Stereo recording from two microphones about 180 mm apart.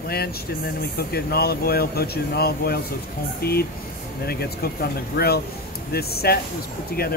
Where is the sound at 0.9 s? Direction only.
60° left (ahead or behind).